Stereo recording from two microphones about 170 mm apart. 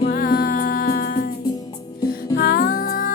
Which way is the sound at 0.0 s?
60° left (ahead or behind).